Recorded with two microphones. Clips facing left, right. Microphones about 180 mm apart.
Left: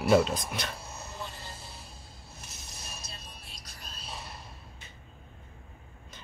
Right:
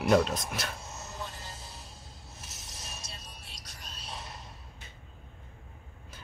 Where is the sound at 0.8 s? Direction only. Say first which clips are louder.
Even; 20° right (ahead or behind).